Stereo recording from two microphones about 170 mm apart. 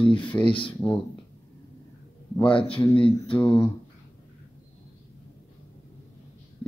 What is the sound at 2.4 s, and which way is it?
Speech, 30° left (ahead or behind).